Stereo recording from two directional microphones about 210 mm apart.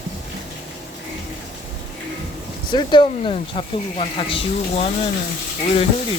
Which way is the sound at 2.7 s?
20° left (ahead or behind).